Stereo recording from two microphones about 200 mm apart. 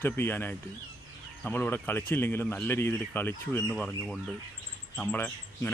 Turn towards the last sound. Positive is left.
turn(degrees=10)  # may be behind; listen again after turning